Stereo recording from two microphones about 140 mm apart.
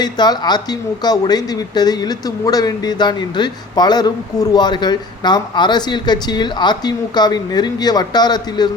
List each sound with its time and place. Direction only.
0.0 s a woman's voice: 30° left (ahead or behind)